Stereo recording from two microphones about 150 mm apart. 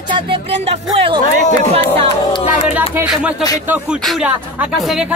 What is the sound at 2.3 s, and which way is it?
Speech, 45° left (ahead or behind).